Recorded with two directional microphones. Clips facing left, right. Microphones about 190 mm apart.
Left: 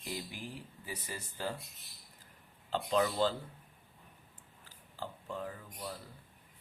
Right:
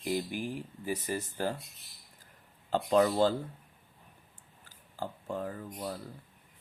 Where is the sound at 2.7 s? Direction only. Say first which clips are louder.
Right 6 dB; 45° right (ahead or behind).